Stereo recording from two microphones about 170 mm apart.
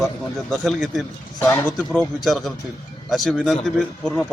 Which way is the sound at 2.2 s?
Centre (ahead or behind).